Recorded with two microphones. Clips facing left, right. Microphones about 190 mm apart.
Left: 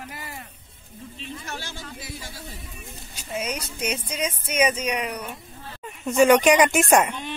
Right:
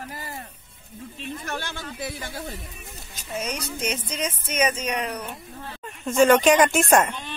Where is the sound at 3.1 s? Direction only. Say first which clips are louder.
Left 1 dB; 10° left (ahead or behind).